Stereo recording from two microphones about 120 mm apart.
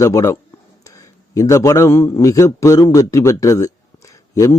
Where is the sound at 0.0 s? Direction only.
25° left (ahead or behind).